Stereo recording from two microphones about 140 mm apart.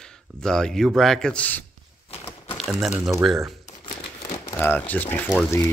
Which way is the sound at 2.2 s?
40° left (ahead or behind).